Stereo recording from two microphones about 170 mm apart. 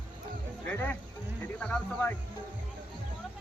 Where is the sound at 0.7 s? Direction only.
10° left (ahead or behind).